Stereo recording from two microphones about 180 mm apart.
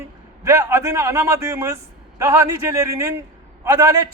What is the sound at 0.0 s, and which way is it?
A man's voice, 15° right (ahead or behind).